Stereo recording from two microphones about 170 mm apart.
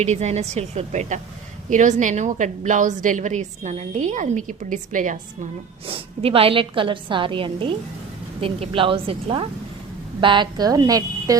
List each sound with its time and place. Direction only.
0.0 s a woman's voice: 40° right (ahead or behind)
5.8 s a woman's voice: 35° right (ahead or behind)